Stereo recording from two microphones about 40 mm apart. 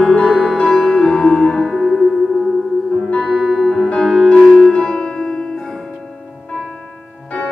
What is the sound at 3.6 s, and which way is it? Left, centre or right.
Music, centre.